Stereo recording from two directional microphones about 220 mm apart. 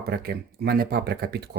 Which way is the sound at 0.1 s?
45° right (ahead or behind).